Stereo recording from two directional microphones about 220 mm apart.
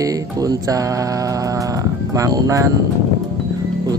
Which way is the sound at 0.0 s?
15° right (ahead or behind).